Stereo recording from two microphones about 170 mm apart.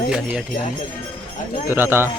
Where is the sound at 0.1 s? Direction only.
5° right (ahead or behind).